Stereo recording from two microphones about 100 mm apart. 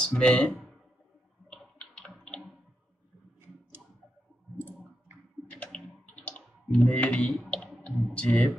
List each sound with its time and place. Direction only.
0.0 s speech: 10° left (ahead or behind)
1.5 s typing: 10° left (ahead or behind)
4.6 s a sound: 20° right (ahead or behind)
5.5 s clicking: 10° left (ahead or behind)